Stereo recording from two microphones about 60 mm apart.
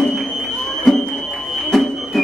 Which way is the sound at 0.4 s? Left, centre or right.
Centre.